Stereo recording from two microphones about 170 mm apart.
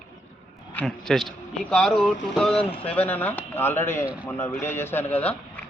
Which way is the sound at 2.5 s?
35° left (ahead or behind).